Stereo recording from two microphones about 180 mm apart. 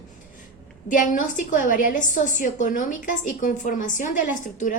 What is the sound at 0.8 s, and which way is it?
A woman's voice, 45° left (ahead or behind).